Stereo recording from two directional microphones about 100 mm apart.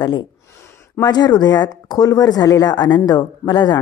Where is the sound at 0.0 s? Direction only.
45° left (ahead or behind).